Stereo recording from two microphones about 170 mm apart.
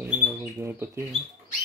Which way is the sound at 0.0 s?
10° right (ahead or behind).